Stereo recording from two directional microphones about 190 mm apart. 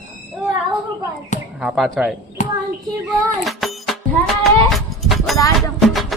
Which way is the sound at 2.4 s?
40° left (ahead or behind).